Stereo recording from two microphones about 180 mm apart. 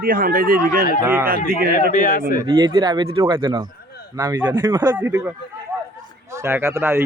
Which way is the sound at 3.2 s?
15° right (ahead or behind).